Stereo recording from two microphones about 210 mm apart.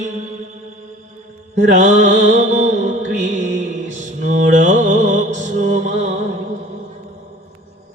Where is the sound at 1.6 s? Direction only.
35° right (ahead or behind).